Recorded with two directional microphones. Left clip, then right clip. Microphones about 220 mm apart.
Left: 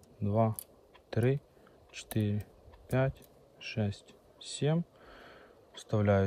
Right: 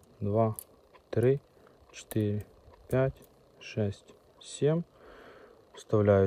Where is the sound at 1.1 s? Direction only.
Centre (ahead or behind).